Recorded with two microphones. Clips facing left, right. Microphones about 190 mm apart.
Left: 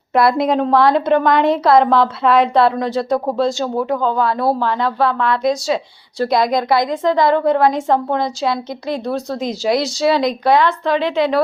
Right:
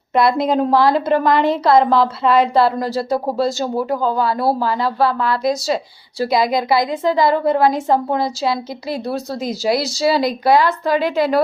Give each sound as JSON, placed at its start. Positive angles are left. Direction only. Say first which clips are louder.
{"t": 0.1, "sound": "a woman's voice", "louder": "left 1 dB", "side_deg": 0}